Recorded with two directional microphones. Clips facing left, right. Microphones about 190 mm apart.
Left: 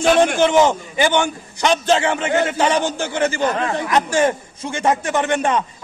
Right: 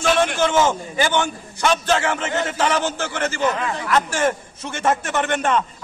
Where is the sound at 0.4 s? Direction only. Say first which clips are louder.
Left 4 dB; 15° left (ahead or behind).